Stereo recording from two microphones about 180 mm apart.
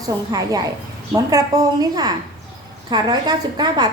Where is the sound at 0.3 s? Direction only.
20° right (ahead or behind).